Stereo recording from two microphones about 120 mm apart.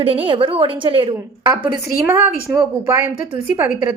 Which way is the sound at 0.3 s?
45° right (ahead or behind).